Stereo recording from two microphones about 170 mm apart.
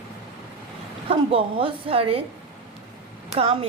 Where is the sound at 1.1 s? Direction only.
30° right (ahead or behind).